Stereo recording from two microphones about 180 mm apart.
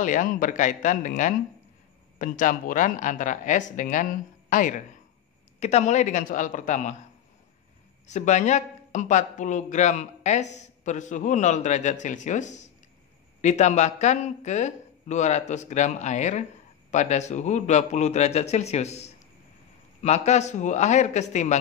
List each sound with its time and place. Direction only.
0.0 s a woman's voice: 45° left (ahead or behind)
8.1 s a man's voice: 40° left (ahead or behind)